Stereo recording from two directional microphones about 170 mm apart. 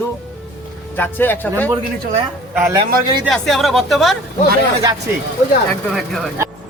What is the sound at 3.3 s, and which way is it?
Speech, centre (ahead or behind).